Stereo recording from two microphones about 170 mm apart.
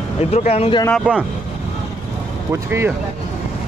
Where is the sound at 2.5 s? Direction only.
15° right (ahead or behind).